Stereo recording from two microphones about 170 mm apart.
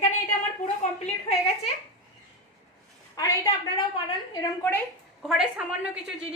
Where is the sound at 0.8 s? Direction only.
40° left (ahead or behind).